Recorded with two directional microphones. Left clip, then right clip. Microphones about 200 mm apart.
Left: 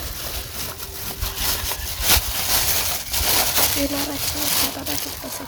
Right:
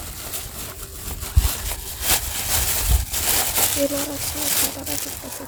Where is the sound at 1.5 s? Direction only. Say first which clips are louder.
Left 5 dB; 10° left (ahead or behind).